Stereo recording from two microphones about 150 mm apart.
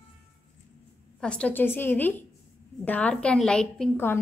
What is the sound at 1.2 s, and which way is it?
A woman's voice, 5° left (ahead or behind).